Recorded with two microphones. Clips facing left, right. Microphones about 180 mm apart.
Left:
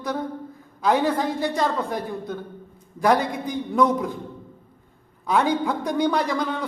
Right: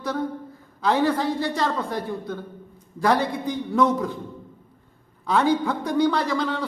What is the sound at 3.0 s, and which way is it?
A man's voice, 15° left (ahead or behind).